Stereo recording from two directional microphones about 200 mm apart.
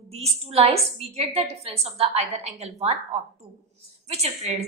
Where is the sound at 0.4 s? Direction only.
30° right (ahead or behind).